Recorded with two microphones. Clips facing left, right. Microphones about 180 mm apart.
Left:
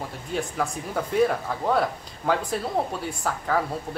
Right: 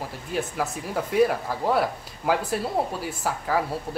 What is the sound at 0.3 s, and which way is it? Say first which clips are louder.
Speech: even; 5° right (ahead or behind).